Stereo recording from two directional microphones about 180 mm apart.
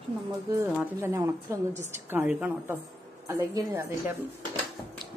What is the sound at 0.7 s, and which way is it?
A woman's voice, 15° right (ahead or behind).